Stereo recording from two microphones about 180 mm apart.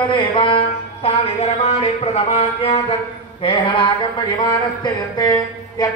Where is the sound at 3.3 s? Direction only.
25° left (ahead or behind).